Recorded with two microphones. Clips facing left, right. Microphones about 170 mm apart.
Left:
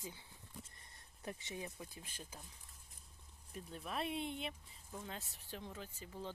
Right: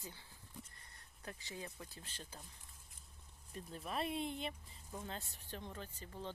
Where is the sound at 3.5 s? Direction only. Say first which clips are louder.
Right 1 dB; centre (ahead or behind).